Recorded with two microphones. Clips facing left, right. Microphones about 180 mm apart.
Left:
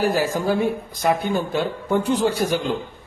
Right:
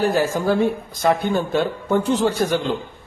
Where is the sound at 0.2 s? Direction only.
10° left (ahead or behind).